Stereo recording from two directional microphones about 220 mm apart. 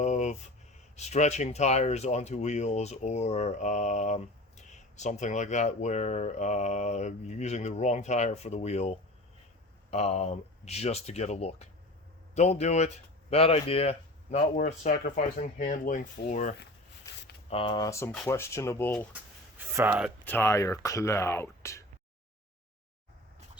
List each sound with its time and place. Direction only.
0.0 s a sound: 30° left (ahead or behind)
0.9 s speech: 30° left (ahead or behind)
9.9 s speech: 30° left (ahead or behind)
17.5 s speech: 25° left (ahead or behind)
19.5 s speech: 10° right (ahead or behind)
20.2 s speech: 10° left (ahead or behind)